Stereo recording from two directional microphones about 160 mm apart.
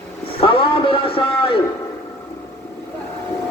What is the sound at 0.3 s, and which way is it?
A man's voice, 35° left (ahead or behind).